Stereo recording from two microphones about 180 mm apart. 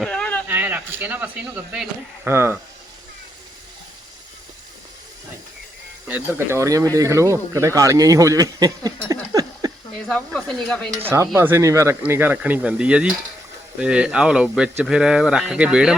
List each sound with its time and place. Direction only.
0.0 s a sound: 5° left (ahead or behind)
0.4 s speech: 10° right (ahead or behind)
6.1 s speech: 10° right (ahead or behind)
9.3 s a sound: 20° right (ahead or behind)
10.1 s speech: 5° left (ahead or behind)
11.0 s speech: 15° right (ahead or behind)